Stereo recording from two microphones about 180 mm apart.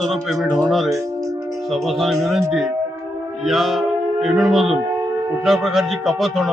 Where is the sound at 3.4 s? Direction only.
Centre (ahead or behind).